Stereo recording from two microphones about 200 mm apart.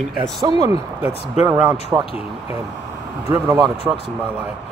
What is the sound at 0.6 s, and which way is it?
Speech, 15° right (ahead or behind).